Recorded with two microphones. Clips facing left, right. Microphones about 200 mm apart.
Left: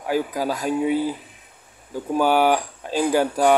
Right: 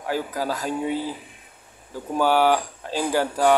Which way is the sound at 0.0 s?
15° left (ahead or behind).